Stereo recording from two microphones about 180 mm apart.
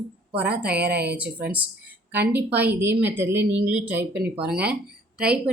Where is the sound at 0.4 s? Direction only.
10° right (ahead or behind).